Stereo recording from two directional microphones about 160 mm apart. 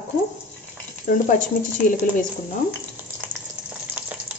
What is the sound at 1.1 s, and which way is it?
Speech, 55° left (ahead or behind).